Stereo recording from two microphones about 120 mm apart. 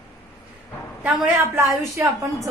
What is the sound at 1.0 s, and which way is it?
A woman's voice, 15° right (ahead or behind).